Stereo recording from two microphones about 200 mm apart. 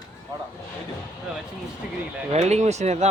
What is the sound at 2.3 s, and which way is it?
Speech, 35° right (ahead or behind).